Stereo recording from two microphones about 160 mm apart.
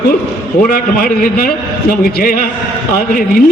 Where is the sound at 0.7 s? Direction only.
65° left (ahead or behind).